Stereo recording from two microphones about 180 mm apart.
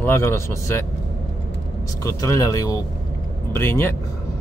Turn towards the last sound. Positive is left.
turn(degrees=15)  # may be behind; listen again after turning